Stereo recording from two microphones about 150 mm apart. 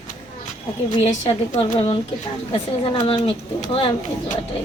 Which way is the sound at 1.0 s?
50° left (ahead or behind).